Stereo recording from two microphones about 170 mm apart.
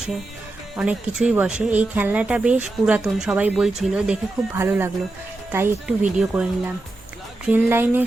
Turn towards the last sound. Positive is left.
turn(degrees=-10)  # may be behind; listen again after turning